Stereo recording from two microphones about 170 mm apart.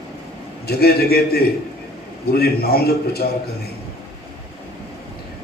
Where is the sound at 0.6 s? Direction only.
65° left (ahead or behind).